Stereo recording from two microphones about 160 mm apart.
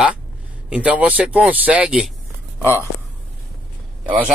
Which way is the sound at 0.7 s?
5° right (ahead or behind).